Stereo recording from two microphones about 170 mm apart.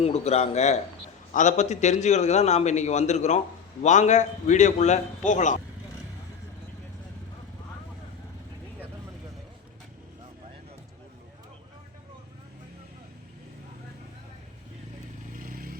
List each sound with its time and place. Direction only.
0.0 s a man's voice: 40° left (ahead or behind)
15.4 s vehicle: 55° right (ahead or behind)